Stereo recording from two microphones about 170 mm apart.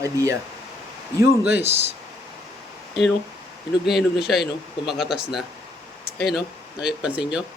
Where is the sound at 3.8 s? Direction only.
Centre (ahead or behind).